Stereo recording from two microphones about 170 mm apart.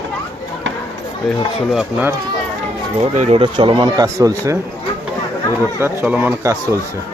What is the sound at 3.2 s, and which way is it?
Speech, 35° right (ahead or behind).